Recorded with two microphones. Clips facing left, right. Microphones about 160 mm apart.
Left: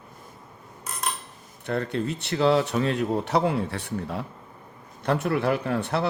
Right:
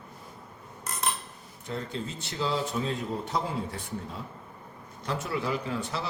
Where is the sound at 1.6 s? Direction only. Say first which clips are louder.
Left 8 dB; 65° left (ahead or behind).